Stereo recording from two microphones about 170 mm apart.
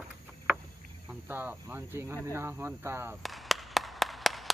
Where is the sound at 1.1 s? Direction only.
10° right (ahead or behind).